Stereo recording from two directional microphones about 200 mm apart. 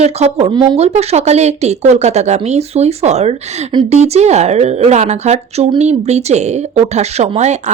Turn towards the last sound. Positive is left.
turn(degrees=-35)  # may be behind; listen again after turning